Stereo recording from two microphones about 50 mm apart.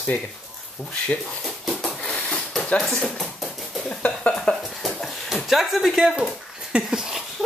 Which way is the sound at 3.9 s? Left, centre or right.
Left.